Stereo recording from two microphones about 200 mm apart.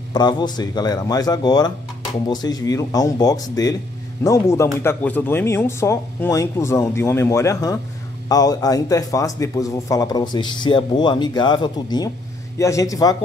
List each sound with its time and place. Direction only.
0.1 s speech: 20° left (ahead or behind)